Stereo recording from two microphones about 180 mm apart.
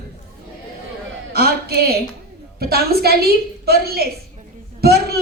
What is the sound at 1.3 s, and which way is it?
A woman's voice, 60° right (ahead or behind).